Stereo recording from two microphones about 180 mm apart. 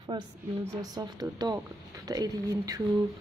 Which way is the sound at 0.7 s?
20° right (ahead or behind).